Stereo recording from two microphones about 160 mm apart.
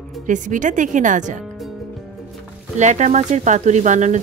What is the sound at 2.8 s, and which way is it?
A woman's voice, 50° right (ahead or behind).